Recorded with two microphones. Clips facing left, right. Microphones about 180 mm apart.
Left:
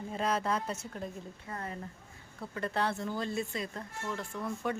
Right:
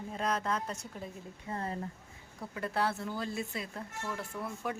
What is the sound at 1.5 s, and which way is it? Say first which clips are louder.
Speech: right 4 dB; 30° right (ahead or behind).